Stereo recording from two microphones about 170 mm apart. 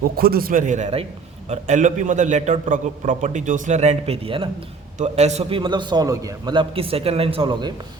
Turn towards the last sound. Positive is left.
turn(degrees=-30)  # may be behind; listen again after turning